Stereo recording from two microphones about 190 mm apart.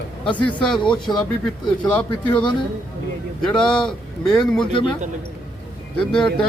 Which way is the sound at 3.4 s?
5° left (ahead or behind).